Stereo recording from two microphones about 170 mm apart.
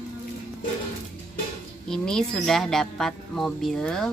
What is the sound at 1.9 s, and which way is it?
Speech, 5° left (ahead or behind).